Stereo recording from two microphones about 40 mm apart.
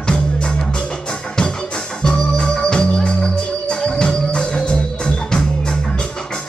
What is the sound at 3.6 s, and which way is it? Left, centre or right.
Music, centre.